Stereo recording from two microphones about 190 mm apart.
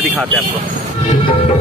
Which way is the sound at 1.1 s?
30° left (ahead or behind).